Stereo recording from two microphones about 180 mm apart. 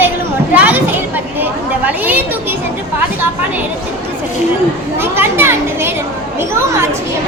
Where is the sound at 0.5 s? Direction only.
10° right (ahead or behind).